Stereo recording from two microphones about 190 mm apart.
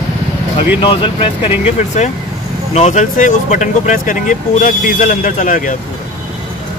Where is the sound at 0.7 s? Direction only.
25° left (ahead or behind); by 5.8 s 45° left (ahead or behind).